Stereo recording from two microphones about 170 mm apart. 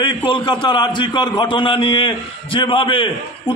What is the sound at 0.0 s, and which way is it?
A man's voice, 25° left (ahead or behind).